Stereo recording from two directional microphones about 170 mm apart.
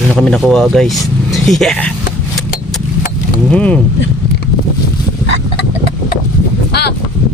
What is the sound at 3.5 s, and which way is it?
Speech, 5° left (ahead or behind).